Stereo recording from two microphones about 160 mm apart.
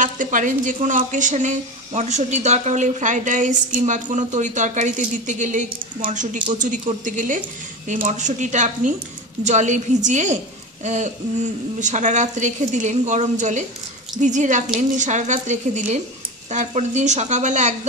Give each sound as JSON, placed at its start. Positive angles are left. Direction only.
{"t": 0.0, "sound": "a woman's voice", "side_deg": -55}